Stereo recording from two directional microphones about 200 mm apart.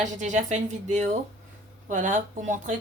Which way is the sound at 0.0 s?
40° right (ahead or behind).